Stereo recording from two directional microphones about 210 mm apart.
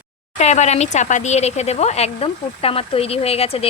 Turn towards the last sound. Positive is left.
turn(degrees=30)  # may be behind; listen again after turning